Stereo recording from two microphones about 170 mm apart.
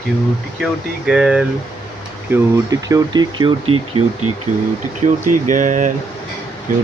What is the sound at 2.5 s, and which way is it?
Speech, 20° right (ahead or behind).